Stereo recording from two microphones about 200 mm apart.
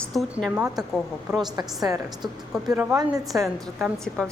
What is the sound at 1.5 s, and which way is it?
A woman's voice, 20° right (ahead or behind).